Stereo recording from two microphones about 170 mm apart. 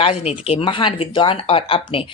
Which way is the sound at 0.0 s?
35° left (ahead or behind).